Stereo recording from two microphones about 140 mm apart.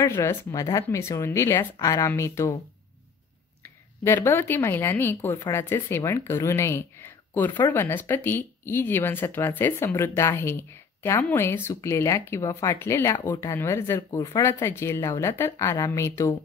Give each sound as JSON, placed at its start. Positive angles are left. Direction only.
{"t": 0.0, "sound": "speech", "side_deg": 20}
{"t": 4.0, "sound": "speech", "side_deg": 15}